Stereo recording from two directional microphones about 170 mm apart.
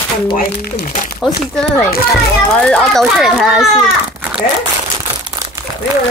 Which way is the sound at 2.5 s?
5° left (ahead or behind).